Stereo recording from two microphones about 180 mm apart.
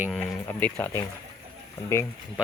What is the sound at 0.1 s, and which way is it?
Speech, 10° left (ahead or behind).